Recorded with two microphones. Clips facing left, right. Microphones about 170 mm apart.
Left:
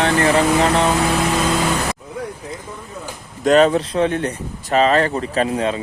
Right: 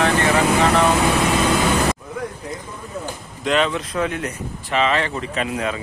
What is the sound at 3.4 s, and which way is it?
Speech, 40° left (ahead or behind).